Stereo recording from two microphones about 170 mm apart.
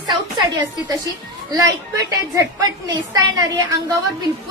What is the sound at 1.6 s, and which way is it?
A woman's voice, 20° right (ahead or behind).